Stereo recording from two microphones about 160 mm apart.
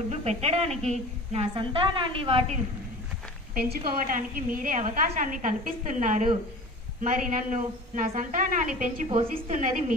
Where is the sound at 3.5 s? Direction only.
65° right (ahead or behind).